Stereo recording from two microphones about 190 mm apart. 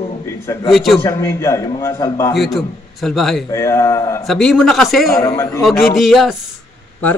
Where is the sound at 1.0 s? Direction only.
15° left (ahead or behind).